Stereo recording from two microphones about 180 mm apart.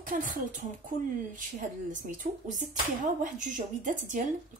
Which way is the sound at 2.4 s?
45° right (ahead or behind).